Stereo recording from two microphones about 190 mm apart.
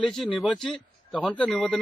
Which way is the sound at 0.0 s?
Centre (ahead or behind).